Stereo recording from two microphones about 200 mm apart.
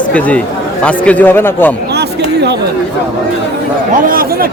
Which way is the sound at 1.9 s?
55° right (ahead or behind).